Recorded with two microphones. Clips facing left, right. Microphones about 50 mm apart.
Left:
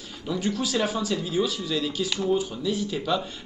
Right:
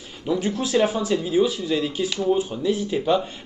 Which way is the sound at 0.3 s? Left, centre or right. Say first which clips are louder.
Right 4 dB; right.